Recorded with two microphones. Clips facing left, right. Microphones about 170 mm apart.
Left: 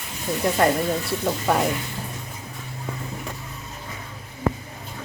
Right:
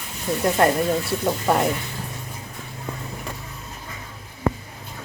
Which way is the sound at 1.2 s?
5° right (ahead or behind).